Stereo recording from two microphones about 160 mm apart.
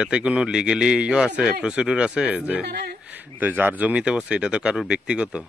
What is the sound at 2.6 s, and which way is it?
Speech, 90° right.